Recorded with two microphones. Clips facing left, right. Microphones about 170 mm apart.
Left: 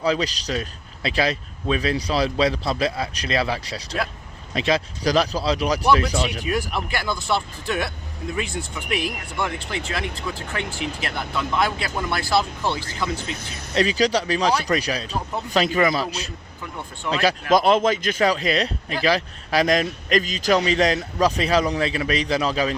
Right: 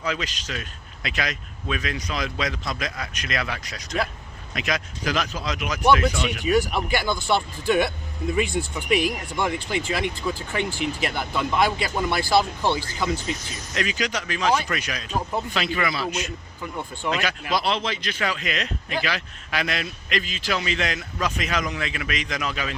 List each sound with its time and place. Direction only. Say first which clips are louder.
0.0 s a man's voice: left 7 dB; 35° left (ahead or behind)
6.4 s speech: right 4 dB; centre (ahead or behind)
13.7 s a man's voice: left 7 dB; 35° left (ahead or behind)
17.5 s a man's voice: left 8 dB; 45° left (ahead or behind)